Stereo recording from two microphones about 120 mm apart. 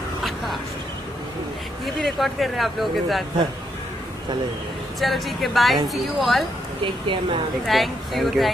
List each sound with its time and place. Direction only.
2.0 s speech: centre (ahead or behind)
5.0 s speech: centre (ahead or behind)
6.8 s speech: 45° right (ahead or behind)
7.6 s speech: centre (ahead or behind)